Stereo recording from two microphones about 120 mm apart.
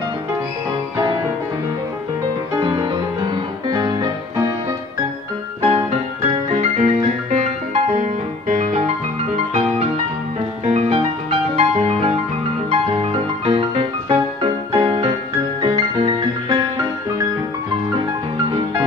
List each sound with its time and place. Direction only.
3.7 s music: 35° right (ahead or behind)
5.6 s music: 55° right (ahead or behind); by 8.9 s 75° right (ahead or behind)
9.5 s music: 60° right (ahead or behind)